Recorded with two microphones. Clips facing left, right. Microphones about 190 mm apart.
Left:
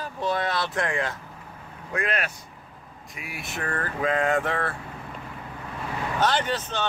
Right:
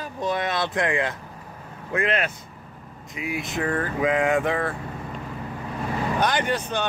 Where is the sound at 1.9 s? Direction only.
25° right (ahead or behind).